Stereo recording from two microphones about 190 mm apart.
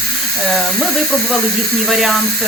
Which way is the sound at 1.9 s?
Centre (ahead or behind).